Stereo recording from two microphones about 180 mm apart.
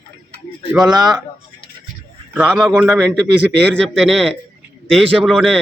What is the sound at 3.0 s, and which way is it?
Speech, 5° left (ahead or behind).